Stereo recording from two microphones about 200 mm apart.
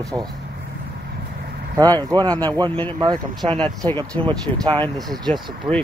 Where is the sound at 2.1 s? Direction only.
10° left (ahead or behind).